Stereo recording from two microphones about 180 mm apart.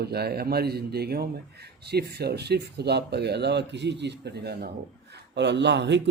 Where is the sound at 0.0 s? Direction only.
60° right (ahead or behind).